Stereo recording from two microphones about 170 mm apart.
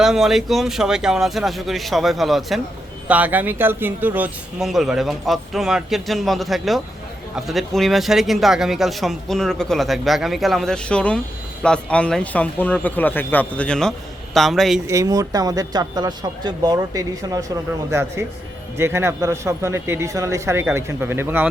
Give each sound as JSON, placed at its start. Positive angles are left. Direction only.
{"t": 0.0, "sound": "a man's voice", "side_deg": 0}
{"t": 14.8, "sound": "a man's voice", "side_deg": -20}